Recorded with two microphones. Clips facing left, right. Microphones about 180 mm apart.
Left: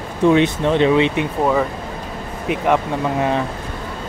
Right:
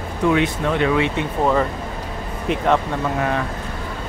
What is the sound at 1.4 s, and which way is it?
Speech, 5° left (ahead or behind).